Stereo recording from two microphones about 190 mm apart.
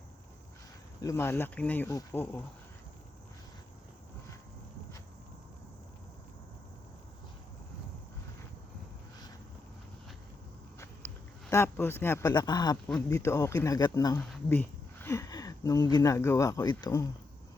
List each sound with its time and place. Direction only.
1.0 s speech: 15° left (ahead or behind)
10.8 s a sound: 15° left (ahead or behind)
13.1 s speech: 15° left (ahead or behind)